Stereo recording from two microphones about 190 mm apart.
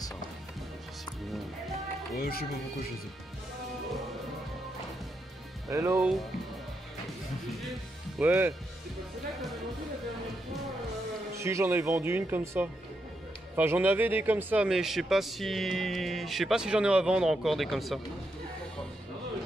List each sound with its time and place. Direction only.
2.1 s speech: 50° left (ahead or behind)
5.7 s speech: 15° right (ahead or behind)
8.2 s speech: 10° right (ahead or behind)
11.3 s a man's voice: 15° right (ahead or behind)